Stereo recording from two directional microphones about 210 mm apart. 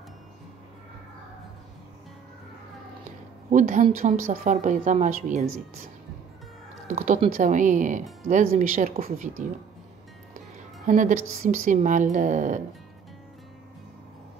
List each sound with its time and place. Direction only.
3.4 s speech: 35° right (ahead or behind)
7.0 s speech: 30° right (ahead or behind)
10.9 s speech: 35° right (ahead or behind)